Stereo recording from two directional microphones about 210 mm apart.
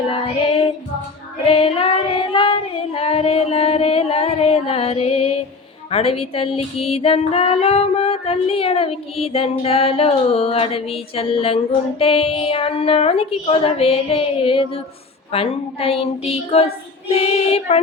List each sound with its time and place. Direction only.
0.1 s child singing: 25° left (ahead or behind)
1.5 s female singing: 25° left (ahead or behind)